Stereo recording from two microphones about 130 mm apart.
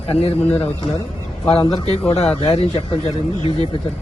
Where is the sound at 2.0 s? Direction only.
50° left (ahead or behind).